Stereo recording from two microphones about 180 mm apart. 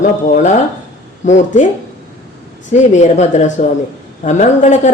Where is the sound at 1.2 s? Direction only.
45° left (ahead or behind).